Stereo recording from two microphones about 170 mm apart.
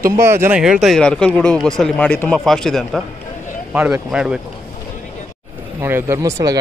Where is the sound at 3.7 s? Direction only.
10° right (ahead or behind).